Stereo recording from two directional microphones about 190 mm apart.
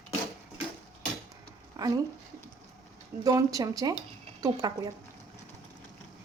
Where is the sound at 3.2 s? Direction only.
20° right (ahead or behind).